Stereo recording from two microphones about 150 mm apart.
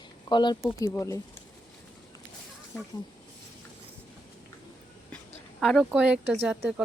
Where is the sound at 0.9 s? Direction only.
20° left (ahead or behind).